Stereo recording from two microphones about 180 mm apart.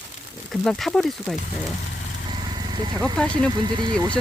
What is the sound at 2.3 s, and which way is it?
Vehicle, 25° right (ahead or behind).